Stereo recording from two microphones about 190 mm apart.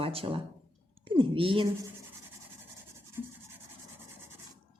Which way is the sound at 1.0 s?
25° right (ahead or behind).